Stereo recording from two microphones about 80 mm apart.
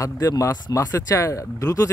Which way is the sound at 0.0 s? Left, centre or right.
Left.